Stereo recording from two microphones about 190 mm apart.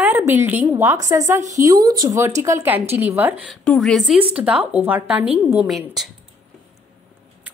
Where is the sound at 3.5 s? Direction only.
Centre (ahead or behind).